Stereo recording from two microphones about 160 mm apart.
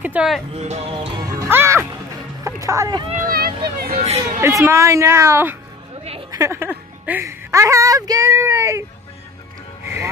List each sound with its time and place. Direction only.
0.0 s music: 10° right (ahead or behind)
0.6 s speech: 40° right (ahead or behind)
0.9 s speech: 30° right (ahead or behind)
1.5 s speech: 15° right (ahead or behind)
3.3 s speech: 75° right (ahead or behind)
4.4 s a woman's voice: 15° right (ahead or behind)